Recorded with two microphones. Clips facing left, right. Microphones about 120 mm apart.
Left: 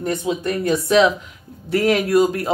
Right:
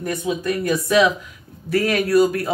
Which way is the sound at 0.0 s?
25° left (ahead or behind).